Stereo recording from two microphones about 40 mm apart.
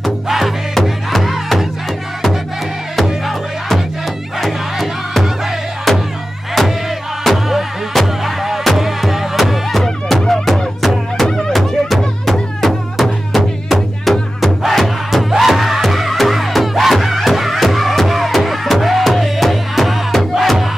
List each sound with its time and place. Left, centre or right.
0.0 s music: centre
3.3 s music: centre
7.2 s music: centre